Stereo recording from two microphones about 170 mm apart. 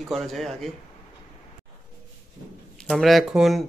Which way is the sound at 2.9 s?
Centre (ahead or behind).